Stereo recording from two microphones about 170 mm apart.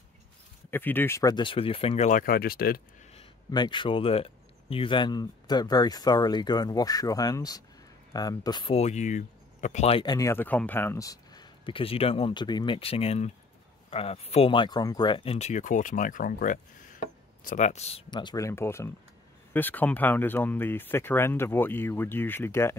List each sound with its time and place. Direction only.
0.7 s speech: 10° left (ahead or behind); by 2.8 s 60° left (ahead or behind)
3.2 s speech: 25° left (ahead or behind)
10.0 s speech: 20° left (ahead or behind)